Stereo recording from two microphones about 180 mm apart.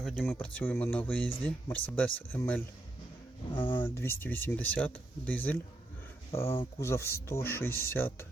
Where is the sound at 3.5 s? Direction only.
25° left (ahead or behind).